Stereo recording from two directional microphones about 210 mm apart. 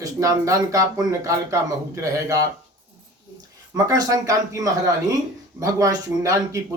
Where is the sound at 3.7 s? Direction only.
20° right (ahead or behind).